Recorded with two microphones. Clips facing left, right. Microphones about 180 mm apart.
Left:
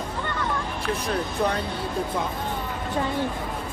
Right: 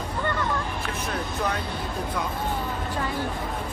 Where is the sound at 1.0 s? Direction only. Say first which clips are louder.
Left 3 dB; 35° left (ahead or behind).